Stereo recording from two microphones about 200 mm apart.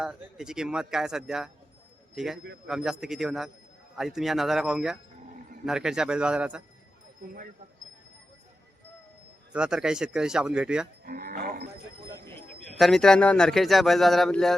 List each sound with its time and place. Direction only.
0.0 s a man's voice: 5° right (ahead or behind)
9.5 s a man's voice: 5° right (ahead or behind)
11.0 s cattle: 50° right (ahead or behind)
12.7 s a man's voice: centre (ahead or behind)